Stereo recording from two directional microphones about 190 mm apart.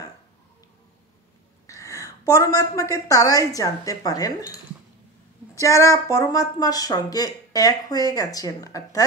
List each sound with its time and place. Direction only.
1.7 s a woman's voice: 15° left (ahead or behind)